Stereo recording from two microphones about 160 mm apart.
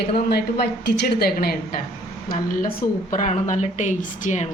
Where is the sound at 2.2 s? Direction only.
55° left (ahead or behind).